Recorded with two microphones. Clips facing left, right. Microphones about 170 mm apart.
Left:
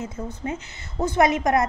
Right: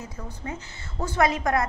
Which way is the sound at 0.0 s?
20° left (ahead or behind).